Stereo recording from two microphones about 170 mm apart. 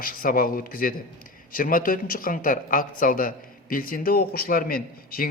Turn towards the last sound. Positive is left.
turn(degrees=60)  # may be behind; listen again after turning